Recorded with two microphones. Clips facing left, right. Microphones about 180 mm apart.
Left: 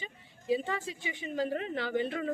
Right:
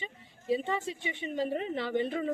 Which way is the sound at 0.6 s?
Centre (ahead or behind).